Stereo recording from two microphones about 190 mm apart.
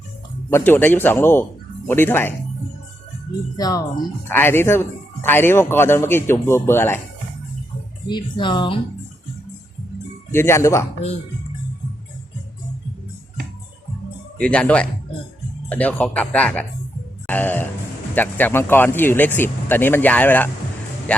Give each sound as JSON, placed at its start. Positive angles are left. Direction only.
{"t": 0.5, "sound": "speech", "side_deg": 10}
{"t": 3.6, "sound": "speech", "side_deg": 20}
{"t": 8.0, "sound": "speech", "side_deg": 25}
{"t": 10.3, "sound": "speech", "side_deg": 15}
{"t": 14.3, "sound": "speech", "side_deg": 5}